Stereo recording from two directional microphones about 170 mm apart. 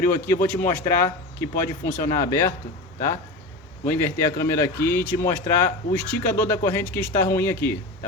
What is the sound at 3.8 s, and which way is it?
A man's voice, 10° left (ahead or behind).